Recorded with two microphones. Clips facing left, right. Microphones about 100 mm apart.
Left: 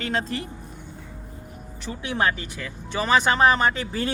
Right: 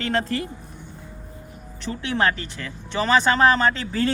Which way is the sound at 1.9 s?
15° left (ahead or behind).